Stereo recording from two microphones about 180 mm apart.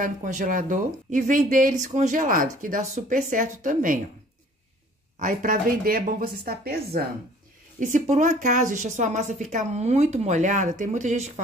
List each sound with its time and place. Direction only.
0.0 s speech: 45° right (ahead or behind)
5.2 s speech: 50° right (ahead or behind)
7.8 s a woman's voice: 45° right (ahead or behind)